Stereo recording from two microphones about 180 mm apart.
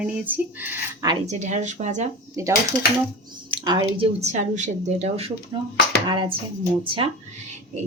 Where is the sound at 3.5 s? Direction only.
25° right (ahead or behind).